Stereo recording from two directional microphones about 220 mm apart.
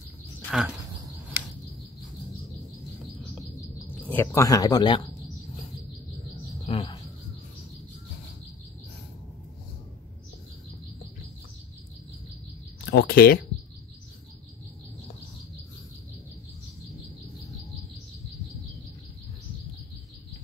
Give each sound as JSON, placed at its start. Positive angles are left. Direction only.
{"t": 0.5, "sound": "speech", "side_deg": 0}
{"t": 4.1, "sound": "speech", "side_deg": 10}
{"t": 6.6, "sound": "cricket", "side_deg": 25}
{"t": 12.8, "sound": "a sound", "side_deg": 45}